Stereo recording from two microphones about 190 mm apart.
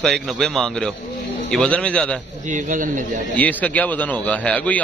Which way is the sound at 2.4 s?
40° right (ahead or behind).